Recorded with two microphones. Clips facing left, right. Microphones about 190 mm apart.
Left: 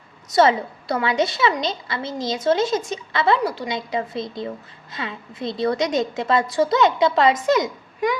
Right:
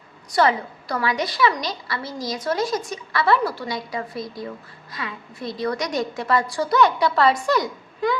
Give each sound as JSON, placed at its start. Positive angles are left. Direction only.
{"t": 0.3, "sound": "a woman's voice", "side_deg": 25}